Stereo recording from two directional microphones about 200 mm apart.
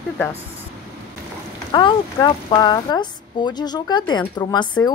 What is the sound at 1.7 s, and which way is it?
Speech, 25° left (ahead or behind).